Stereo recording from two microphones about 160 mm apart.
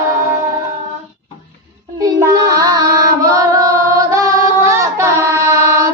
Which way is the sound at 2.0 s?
20° right (ahead or behind).